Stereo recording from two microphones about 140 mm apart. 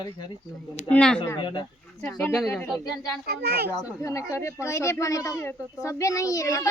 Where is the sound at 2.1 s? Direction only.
10° left (ahead or behind).